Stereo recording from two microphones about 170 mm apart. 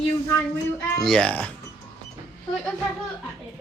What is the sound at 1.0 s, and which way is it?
Chopping, 5° left (ahead or behind).